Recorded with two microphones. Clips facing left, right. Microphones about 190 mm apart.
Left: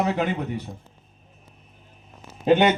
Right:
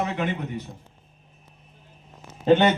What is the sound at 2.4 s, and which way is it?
Speech, 10° left (ahead or behind).